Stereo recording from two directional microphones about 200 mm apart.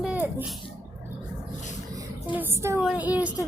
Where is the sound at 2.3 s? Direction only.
10° right (ahead or behind).